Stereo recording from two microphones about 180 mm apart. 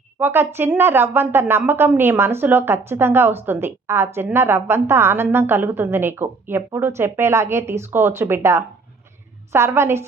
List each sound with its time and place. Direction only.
0.2 s a woman's voice: 15° right (ahead or behind)